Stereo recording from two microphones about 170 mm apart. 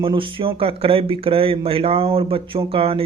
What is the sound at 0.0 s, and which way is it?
Speech, 30° right (ahead or behind).